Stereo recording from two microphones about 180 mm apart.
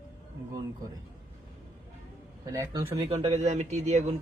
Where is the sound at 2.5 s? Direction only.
20° right (ahead or behind).